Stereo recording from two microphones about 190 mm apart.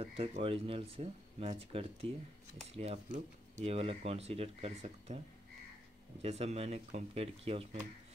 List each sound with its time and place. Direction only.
0.0 s speech: 30° right (ahead or behind)
6.2 s speech: 35° right (ahead or behind)